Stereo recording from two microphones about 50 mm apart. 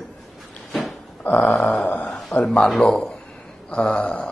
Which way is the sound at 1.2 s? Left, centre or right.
Left.